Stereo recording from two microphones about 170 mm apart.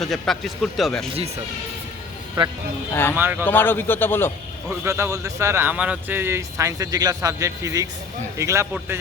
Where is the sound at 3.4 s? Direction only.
10° left (ahead or behind).